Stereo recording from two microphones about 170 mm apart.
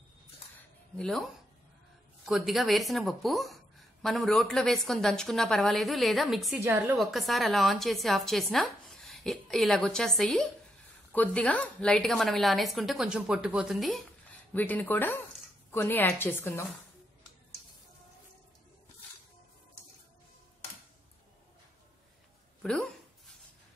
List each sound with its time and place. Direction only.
0.9 s a woman's voice: 5° left (ahead or behind)
2.2 s a woman's voice: centre (ahead or behind)
6.6 s a woman's voice: 15° right (ahead or behind)
7.0 s a woman's voice: centre (ahead or behind)
14.5 s a woman's voice: 10° left (ahead or behind)
22.6 s a sound: 5° left (ahead or behind)